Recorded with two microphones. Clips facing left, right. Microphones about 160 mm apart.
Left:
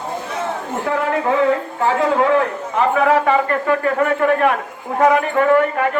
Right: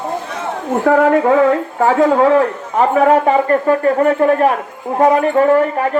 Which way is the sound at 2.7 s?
30° right (ahead or behind).